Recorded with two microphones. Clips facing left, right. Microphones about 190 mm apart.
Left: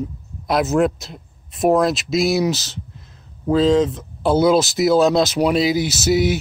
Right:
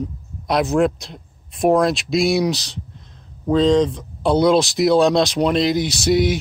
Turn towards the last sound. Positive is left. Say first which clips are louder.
# even
turn(degrees=5)  # may be behind; listen again after turning